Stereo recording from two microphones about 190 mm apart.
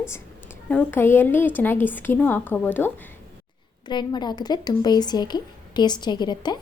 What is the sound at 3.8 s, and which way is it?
A woman's voice, 25° left (ahead or behind).